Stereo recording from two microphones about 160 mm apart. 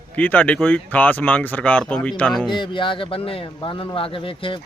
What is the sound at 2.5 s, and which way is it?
Speech, 30° left (ahead or behind).